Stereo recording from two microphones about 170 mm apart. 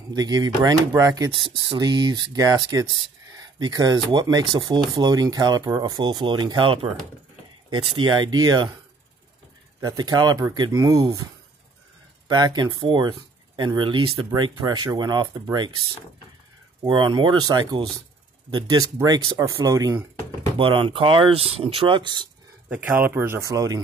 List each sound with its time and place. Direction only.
0.1 s speech: 25° right (ahead or behind)
9.8 s speech: 25° right (ahead or behind)
12.3 s speech: 25° right (ahead or behind)
16.8 s speech: 25° right (ahead or behind)
22.7 s speech: 10° right (ahead or behind)